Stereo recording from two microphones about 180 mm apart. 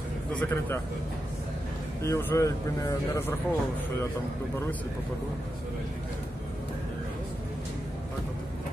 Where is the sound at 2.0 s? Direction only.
15° left (ahead or behind).